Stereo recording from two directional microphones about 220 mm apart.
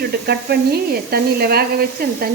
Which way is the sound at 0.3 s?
45° right (ahead or behind).